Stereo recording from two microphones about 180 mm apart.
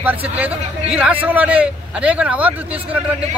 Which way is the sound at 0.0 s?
10° right (ahead or behind).